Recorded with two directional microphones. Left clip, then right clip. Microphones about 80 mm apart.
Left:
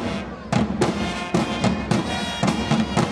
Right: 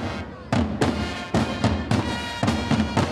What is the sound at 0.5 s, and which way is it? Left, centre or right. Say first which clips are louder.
Fireworks: left 1 dB; centre.